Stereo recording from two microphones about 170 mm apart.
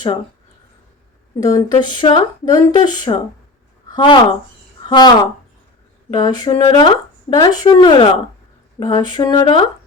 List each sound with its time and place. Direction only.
1.4 s speech: 20° left (ahead or behind)